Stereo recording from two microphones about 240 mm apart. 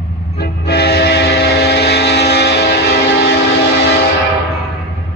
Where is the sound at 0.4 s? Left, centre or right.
Left.